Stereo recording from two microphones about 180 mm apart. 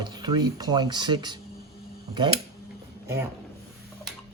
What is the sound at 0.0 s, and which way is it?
Speech, 25° right (ahead or behind).